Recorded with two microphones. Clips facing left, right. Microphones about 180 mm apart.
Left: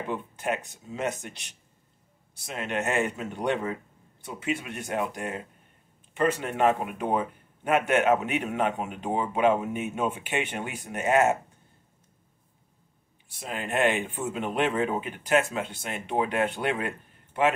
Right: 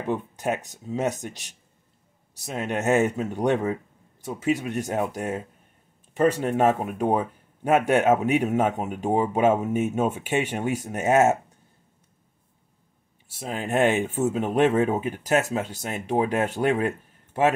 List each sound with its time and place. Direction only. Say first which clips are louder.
0.1 s speech: right 5 dB; 40° right (ahead or behind)
13.3 s speech: right 5 dB; 40° right (ahead or behind)